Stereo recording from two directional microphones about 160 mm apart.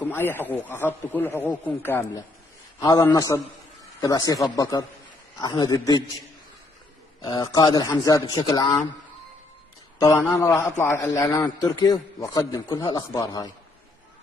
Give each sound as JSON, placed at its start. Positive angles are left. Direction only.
{"t": 0.0, "sound": "a man's voice", "side_deg": 10}
{"t": 7.2, "sound": "a man's voice", "side_deg": 25}
{"t": 9.9, "sound": "a man's voice", "side_deg": 20}